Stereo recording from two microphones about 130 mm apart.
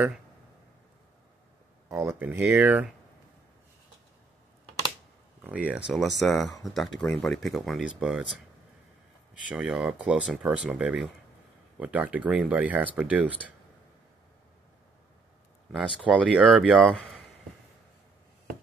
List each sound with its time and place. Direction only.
1.9 s speech: 20° right (ahead or behind)
5.4 s speech: 10° right (ahead or behind)
9.5 s speech: 5° right (ahead or behind)
15.7 s speech: 5° right (ahead or behind)